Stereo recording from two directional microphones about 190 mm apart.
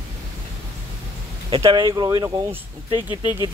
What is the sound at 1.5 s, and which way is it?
Speech, 25° right (ahead or behind).